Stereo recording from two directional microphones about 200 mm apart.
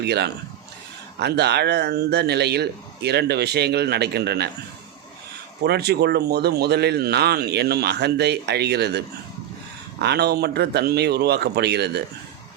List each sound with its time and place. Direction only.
0.0 s speech: 55° right (ahead or behind)
5.6 s speech: 55° right (ahead or behind)